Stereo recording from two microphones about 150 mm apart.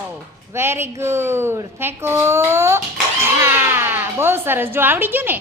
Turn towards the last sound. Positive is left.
turn(degrees=-15)  # may be behind; listen again after turning